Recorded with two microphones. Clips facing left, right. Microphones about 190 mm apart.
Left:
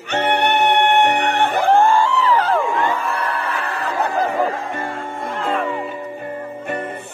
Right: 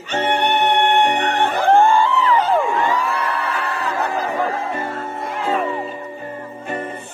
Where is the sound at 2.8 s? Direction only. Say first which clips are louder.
Right 1 dB; 55° left (ahead or behind).